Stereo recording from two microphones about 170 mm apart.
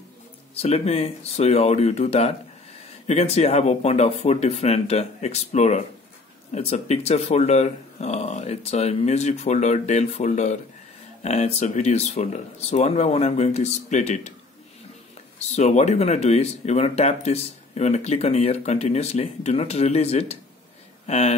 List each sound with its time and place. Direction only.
0.6 s speech: 35° left (ahead or behind)
15.3 s speech: 40° left (ahead or behind)